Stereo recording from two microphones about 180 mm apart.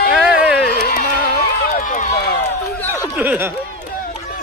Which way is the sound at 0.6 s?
55° left (ahead or behind).